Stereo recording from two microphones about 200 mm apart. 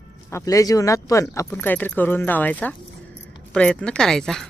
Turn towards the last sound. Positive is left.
turn(degrees=0)  # may be behind; listen again after turning